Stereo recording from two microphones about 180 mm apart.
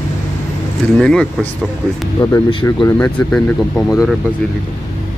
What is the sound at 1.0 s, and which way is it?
Speech, 5° left (ahead or behind).